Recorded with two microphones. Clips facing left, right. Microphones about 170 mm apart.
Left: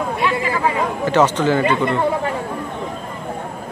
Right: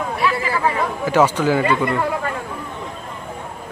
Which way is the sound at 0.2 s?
20° left (ahead or behind).